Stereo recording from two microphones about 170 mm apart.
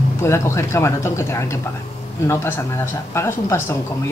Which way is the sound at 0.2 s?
15° left (ahead or behind).